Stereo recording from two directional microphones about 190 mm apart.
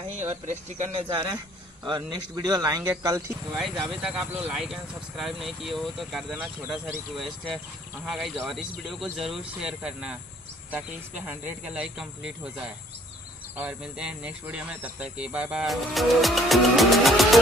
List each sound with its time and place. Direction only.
0.5 s speech: 35° right (ahead or behind)
1.0 s speech: 20° right (ahead or behind)
3.5 s speech: centre (ahead or behind)